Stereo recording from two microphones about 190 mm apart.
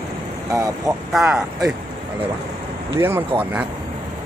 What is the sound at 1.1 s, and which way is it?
Speech, 5° right (ahead or behind).